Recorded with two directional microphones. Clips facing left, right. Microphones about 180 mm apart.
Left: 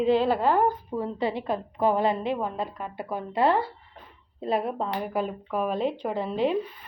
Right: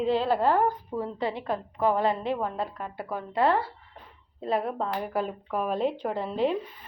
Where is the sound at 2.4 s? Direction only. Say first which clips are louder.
Left 1 dB; 10° left (ahead or behind).